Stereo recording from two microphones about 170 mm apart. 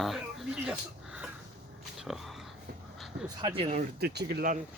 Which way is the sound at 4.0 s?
70° right (ahead or behind).